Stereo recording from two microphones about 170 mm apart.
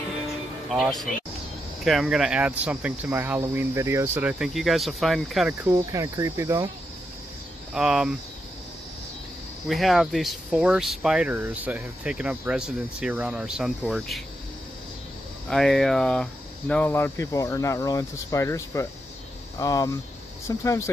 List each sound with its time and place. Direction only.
0.7 s speech: centre (ahead or behind)
5.6 s speech: 20° right (ahead or behind)
7.7 s speech: 5° right (ahead or behind)
9.7 s speech: centre (ahead or behind)
15.5 s speech: centre (ahead or behind)